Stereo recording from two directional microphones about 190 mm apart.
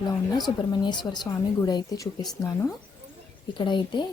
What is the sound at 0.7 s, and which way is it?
Speech, 25° left (ahead or behind).